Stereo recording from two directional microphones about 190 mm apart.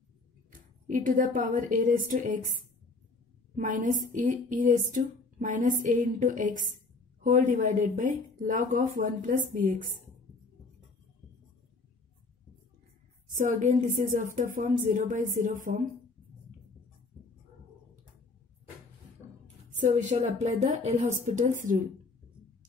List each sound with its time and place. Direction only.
0.5 s speech: 45° right (ahead or behind)
3.5 s speech: 45° right (ahead or behind)
13.4 s speech: 40° right (ahead or behind)
19.8 s a woman's voice: 40° right (ahead or behind)